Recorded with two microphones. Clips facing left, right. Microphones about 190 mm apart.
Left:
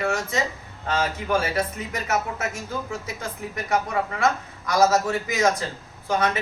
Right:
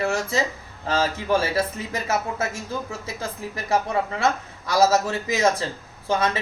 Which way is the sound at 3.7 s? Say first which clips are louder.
Right 2 dB; 30° right (ahead or behind).